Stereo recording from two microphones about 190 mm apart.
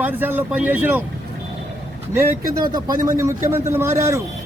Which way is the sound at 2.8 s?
15° right (ahead or behind).